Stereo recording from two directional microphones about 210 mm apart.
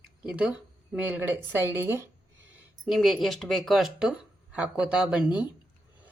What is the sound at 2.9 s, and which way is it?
Speech, centre (ahead or behind).